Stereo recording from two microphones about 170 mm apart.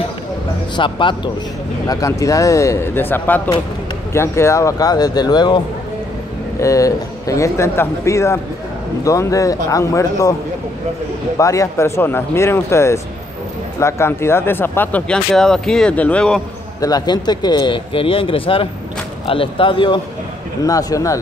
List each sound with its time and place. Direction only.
0.7 s speech: 30° left (ahead or behind)
6.6 s speech: 20° left (ahead or behind)
11.3 s speech: 20° left (ahead or behind)
16.8 s speech: 25° left (ahead or behind)